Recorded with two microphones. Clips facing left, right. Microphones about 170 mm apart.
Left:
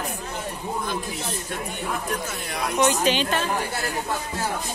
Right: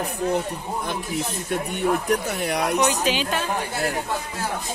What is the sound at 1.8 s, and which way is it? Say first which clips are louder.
Speech: right 8 dB; 65° right (ahead or behind).